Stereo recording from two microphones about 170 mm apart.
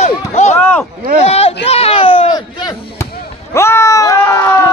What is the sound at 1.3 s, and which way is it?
Speech, 35° left (ahead or behind).